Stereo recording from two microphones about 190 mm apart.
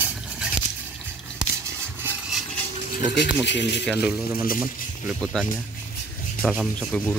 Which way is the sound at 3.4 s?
65° left (ahead or behind).